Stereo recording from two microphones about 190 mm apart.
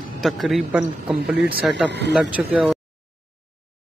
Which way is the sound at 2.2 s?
5° right (ahead or behind).